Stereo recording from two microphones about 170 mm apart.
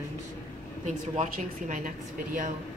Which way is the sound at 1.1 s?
45° right (ahead or behind).